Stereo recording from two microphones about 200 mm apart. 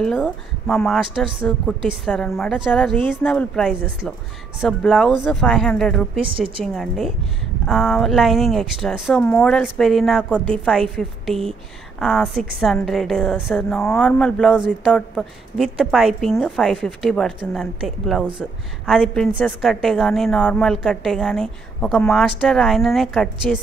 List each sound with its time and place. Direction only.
0.0 s a woman's voice: centre (ahead or behind)
6.3 s a woman's voice: 25° right (ahead or behind)
6.6 s a woman's voice: centre (ahead or behind)